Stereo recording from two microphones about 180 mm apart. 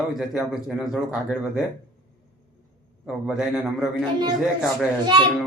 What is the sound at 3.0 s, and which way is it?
A man's voice, 5° right (ahead or behind).